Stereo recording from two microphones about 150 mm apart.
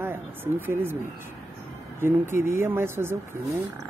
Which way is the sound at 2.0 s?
15° right (ahead or behind).